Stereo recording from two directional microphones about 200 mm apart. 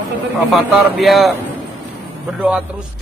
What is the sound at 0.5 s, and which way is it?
Speech, centre (ahead or behind).